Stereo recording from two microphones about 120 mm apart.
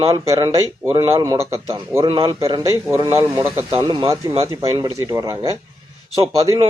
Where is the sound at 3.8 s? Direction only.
40° right (ahead or behind).